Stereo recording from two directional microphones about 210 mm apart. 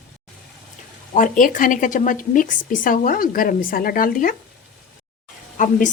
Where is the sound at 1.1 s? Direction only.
40° left (ahead or behind).